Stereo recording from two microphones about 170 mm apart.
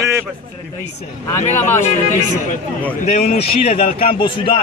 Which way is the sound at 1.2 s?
15° left (ahead or behind).